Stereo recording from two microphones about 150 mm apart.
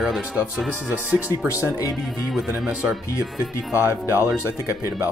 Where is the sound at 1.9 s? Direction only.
Centre (ahead or behind).